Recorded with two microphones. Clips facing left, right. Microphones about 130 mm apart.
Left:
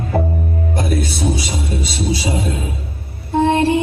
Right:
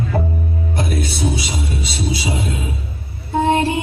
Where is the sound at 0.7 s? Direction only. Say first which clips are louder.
Left 2 dB; 40° left (ahead or behind).